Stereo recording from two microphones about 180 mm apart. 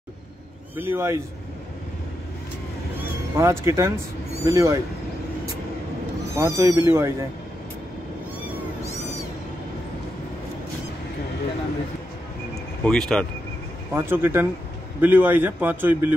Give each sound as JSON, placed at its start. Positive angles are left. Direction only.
{"t": 0.7, "sound": "a man's voice", "side_deg": -10}
{"t": 3.3, "sound": "a man's voice", "side_deg": -15}
{"t": 6.3, "sound": "a man's voice", "side_deg": -15}
{"t": 12.8, "sound": "speech", "side_deg": 5}
{"t": 13.9, "sound": "a man's voice", "side_deg": -10}